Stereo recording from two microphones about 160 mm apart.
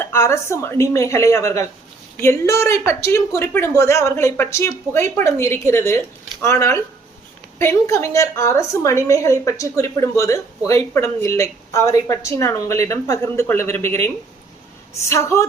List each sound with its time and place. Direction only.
0.0 s a woman's voice: 15° left (ahead or behind)
15.1 s speech: 15° left (ahead or behind)